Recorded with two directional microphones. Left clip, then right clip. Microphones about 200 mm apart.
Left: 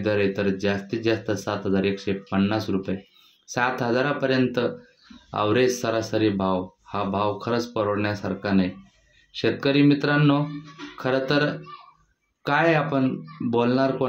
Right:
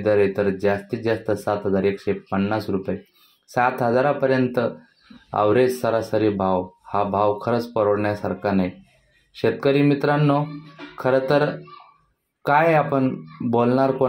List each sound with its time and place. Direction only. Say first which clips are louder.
0.0 s speech: right 4 dB; 5° right (ahead or behind)